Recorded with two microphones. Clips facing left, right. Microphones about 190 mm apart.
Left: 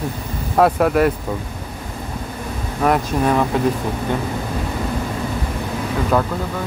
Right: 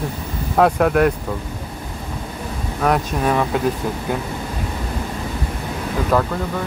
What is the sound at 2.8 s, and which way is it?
Speech, centre (ahead or behind).